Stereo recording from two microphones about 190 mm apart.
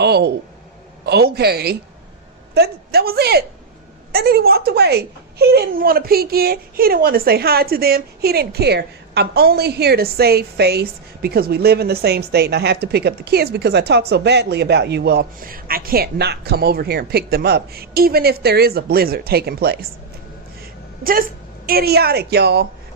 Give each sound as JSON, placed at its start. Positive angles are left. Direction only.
{"t": 0.0, "sound": "a sound", "side_deg": -60}
{"t": 1.0, "sound": "speech", "side_deg": -55}
{"t": 21.0, "sound": "speech", "side_deg": -50}